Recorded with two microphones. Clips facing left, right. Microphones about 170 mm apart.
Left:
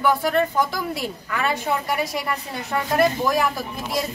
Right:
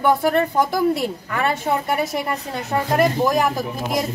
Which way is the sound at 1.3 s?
40° right (ahead or behind).